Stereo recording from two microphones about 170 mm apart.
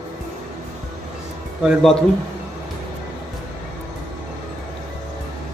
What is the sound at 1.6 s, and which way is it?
Speech, centre (ahead or behind).